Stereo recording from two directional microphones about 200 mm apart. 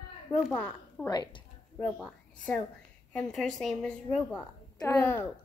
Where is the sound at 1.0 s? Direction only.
20° left (ahead or behind).